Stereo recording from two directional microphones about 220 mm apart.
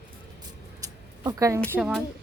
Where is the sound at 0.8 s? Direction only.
15° right (ahead or behind).